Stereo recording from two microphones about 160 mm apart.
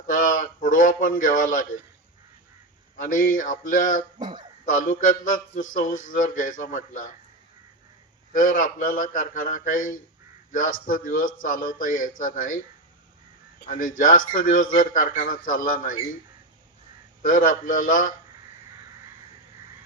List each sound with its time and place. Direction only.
0.1 s a sound: 60° left (ahead or behind)
3.0 s a man's voice: 60° left (ahead or behind)
4.2 s speech: 25° right (ahead or behind)
4.6 s a man's voice: 55° left (ahead or behind)
8.3 s a man's voice: 55° left (ahead or behind)
13.6 s a man's voice: 60° left (ahead or behind)
17.2 s a man's voice: 55° left (ahead or behind)